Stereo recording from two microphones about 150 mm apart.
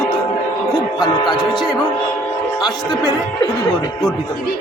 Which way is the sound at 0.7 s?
25° left (ahead or behind).